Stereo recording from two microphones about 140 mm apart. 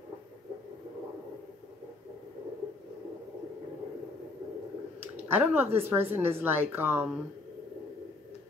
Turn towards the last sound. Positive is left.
turn(degrees=-15)  # may be behind; listen again after turning